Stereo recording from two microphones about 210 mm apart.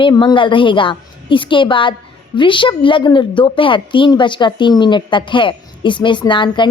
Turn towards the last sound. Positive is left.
turn(degrees=20)  # may be behind; listen again after turning